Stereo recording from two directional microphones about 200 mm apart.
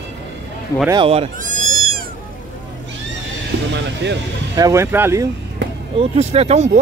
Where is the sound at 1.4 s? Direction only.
40° right (ahead or behind).